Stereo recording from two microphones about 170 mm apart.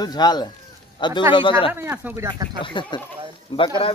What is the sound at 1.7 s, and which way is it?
Speech, 10° right (ahead or behind).